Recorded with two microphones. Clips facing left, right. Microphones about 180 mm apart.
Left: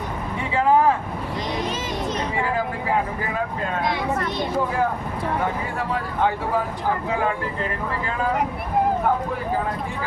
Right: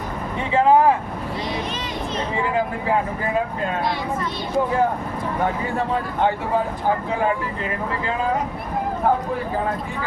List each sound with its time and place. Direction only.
0.5 s vehicle: 20° right (ahead or behind)